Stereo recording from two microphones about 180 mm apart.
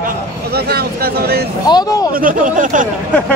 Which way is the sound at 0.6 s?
60° right (ahead or behind).